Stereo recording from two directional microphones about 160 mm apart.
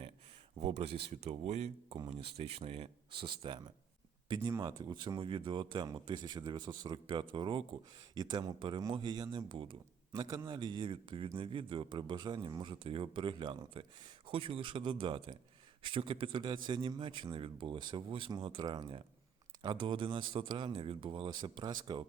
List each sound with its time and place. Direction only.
0.6 s speech: 40° right (ahead or behind)
2.0 s speech: 30° right (ahead or behind)